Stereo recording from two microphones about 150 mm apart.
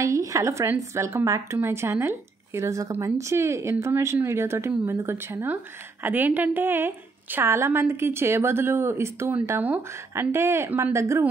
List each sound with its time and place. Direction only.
0.0 s a woman's voice: 20° right (ahead or behind)